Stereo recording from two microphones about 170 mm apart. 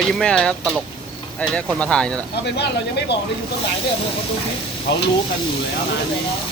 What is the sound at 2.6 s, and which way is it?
Speech, 80° left.